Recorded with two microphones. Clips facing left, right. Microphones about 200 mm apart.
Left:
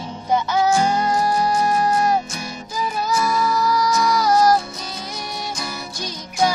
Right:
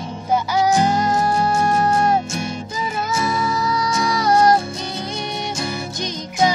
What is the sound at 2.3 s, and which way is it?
Music, 25° right (ahead or behind).